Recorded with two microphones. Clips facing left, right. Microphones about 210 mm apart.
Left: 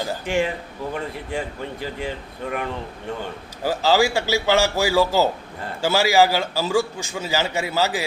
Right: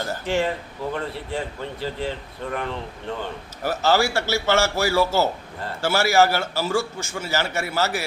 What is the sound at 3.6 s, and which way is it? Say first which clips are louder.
A man's voice: left 2 dB; 15° left (ahead or behind).